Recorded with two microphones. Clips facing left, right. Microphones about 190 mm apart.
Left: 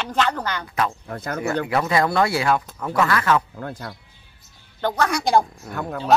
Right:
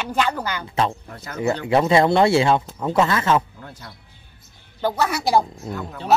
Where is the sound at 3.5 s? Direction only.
55° left (ahead or behind).